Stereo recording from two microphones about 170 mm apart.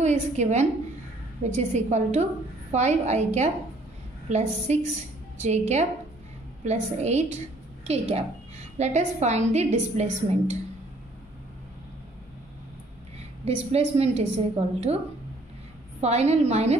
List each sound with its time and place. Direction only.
0.0 s a woman's voice: 45° right (ahead or behind)
4.7 s a woman's voice: 40° right (ahead or behind)
13.5 s a woman's voice: 35° right (ahead or behind)
16.0 s a woman's voice: 40° right (ahead or behind)